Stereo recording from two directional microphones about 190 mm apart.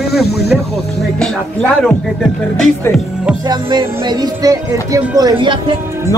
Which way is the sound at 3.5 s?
25° right (ahead or behind).